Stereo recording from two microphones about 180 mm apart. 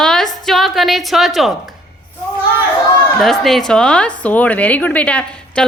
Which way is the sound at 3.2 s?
Centre (ahead or behind).